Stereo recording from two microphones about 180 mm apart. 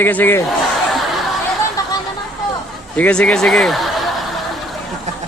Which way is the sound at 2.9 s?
10° left (ahead or behind).